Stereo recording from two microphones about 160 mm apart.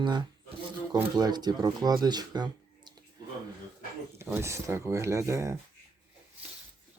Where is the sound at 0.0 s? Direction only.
30° right (ahead or behind).